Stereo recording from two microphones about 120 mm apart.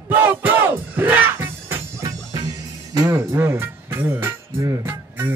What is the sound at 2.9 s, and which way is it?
Speech, 30° right (ahead or behind).